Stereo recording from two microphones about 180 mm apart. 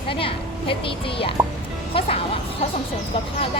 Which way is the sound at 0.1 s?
30° left (ahead or behind).